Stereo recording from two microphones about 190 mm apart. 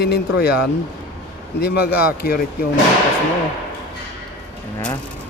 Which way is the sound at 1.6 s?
55° left (ahead or behind).